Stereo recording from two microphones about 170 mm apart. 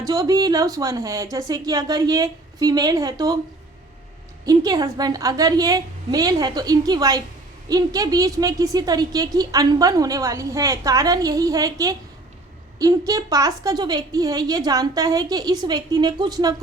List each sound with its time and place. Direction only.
0.0 s a woman's voice: 20° right (ahead or behind)
4.4 s a woman's voice: 20° right (ahead or behind)